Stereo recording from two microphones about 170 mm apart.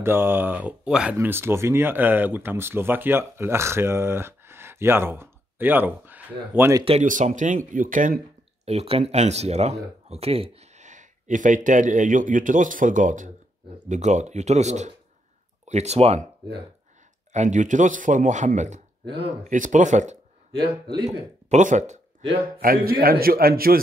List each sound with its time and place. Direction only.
0.0 s speech: 15° right (ahead or behind)
6.8 s speech: 35° right (ahead or behind)
7.1 s speech: 50° right (ahead or behind)
8.6 s speech: 35° right (ahead or behind)
17.3 s speech: 45° right (ahead or behind)
21.5 s speech: 45° right (ahead or behind)
22.6 s a man's voice: 60° right (ahead or behind)